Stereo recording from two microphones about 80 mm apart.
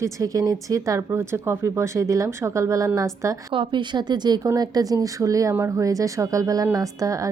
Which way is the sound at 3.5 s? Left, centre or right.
Right.